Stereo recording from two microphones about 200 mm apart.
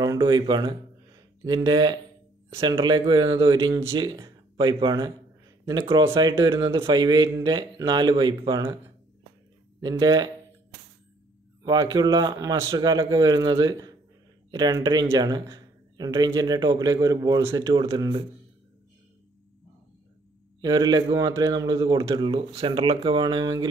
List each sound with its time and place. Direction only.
0.0 s speech: 20° right (ahead or behind)
9.8 s speech: 20° right (ahead or behind)
11.6 s speech: 20° right (ahead or behind)
20.6 s speech: 20° right (ahead or behind)